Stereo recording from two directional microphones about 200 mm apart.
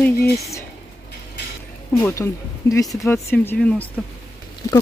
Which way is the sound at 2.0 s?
15° left (ahead or behind).